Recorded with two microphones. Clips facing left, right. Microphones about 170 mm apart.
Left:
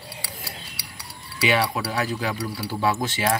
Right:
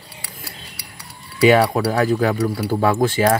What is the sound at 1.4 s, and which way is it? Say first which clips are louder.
Speech: right 9 dB; 45° right (ahead or behind).